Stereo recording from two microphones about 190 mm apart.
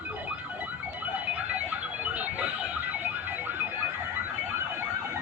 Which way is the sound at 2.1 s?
10° right (ahead or behind).